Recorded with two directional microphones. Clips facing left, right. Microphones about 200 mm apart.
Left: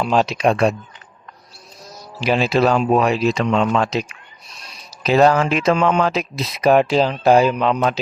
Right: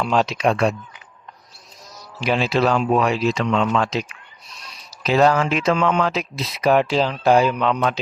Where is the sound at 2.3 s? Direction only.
40° left (ahead or behind).